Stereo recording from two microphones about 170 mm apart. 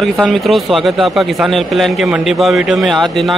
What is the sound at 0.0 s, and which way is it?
A man's voice, centre (ahead or behind).